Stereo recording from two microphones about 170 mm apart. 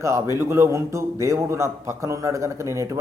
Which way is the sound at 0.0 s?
15° right (ahead or behind).